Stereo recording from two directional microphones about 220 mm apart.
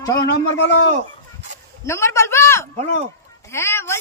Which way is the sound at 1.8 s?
10° left (ahead or behind).